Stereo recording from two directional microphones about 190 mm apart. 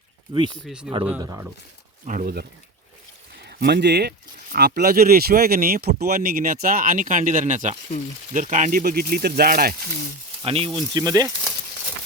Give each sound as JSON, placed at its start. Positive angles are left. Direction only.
{"t": 0.3, "sound": "speech", "side_deg": -25}
{"t": 0.6, "sound": "speech", "side_deg": -5}
{"t": 1.2, "sound": "speech", "side_deg": -15}
{"t": 2.0, "sound": "speech", "side_deg": -45}
{"t": 10.4, "sound": "speech", "side_deg": -30}
{"t": 10.9, "sound": "speech", "side_deg": -20}